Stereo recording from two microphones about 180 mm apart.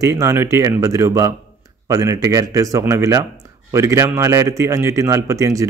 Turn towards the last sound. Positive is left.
turn(degrees=-20)  # may be behind; listen again after turning